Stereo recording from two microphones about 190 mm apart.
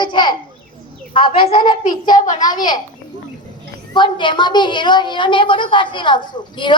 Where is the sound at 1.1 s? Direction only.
25° left (ahead or behind).